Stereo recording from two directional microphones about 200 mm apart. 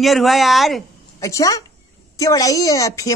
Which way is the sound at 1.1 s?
15° left (ahead or behind).